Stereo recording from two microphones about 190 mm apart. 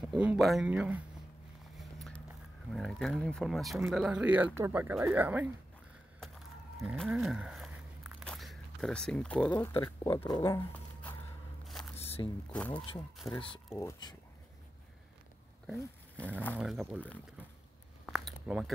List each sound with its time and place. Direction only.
0.0 s speech: 5° right (ahead or behind)
1.8 s a sound: centre (ahead or behind)
2.7 s speech: centre (ahead or behind)
6.2 s a sound: centre (ahead or behind)
7.0 s biting: centre (ahead or behind)
11.6 s single-lens reflex camera: centre (ahead or behind)
12.0 s music: 30° left (ahead or behind)
12.4 s speech: 5° left (ahead or behind)
16.5 s speech: 5° right (ahead or behind)
18.0 s a sound: centre (ahead or behind)